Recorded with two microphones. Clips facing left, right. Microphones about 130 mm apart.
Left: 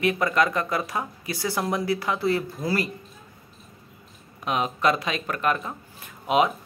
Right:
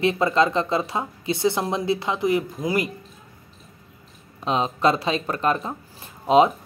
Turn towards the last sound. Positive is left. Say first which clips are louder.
# right 5 dB
turn(degrees=-30)  # may be behind; listen again after turning